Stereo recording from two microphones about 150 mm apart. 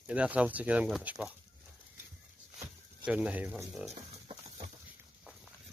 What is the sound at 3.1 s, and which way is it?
Speech, 10° right (ahead or behind).